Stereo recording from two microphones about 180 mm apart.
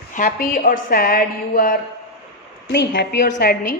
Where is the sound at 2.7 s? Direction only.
65° left (ahead or behind).